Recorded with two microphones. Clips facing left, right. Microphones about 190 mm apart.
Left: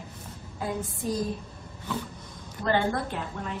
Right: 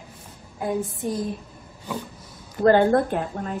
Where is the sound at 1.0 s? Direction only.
25° right (ahead or behind).